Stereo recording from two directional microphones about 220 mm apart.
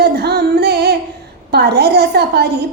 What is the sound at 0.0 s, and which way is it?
Music, 45° right (ahead or behind).